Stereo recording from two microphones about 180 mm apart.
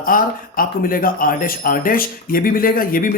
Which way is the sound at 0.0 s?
50° left (ahead or behind).